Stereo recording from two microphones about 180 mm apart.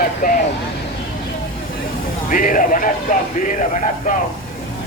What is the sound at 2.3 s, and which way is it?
Speech, 50° left (ahead or behind).